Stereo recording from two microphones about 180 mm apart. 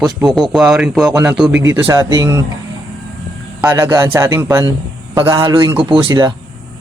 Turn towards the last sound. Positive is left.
turn(degrees=-25)  # may be behind; listen again after turning